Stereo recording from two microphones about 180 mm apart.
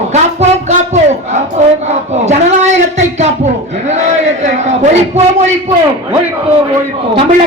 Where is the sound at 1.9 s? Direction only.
40° right (ahead or behind).